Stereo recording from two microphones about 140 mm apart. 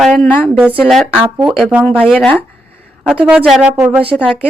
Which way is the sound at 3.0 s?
10° right (ahead or behind).